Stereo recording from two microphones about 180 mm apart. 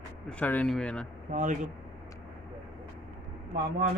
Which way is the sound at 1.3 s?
45° right (ahead or behind).